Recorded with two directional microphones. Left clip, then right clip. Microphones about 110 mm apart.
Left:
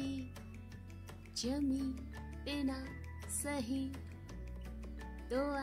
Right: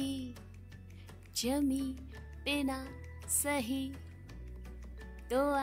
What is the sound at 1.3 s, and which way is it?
Music, 20° right (ahead or behind).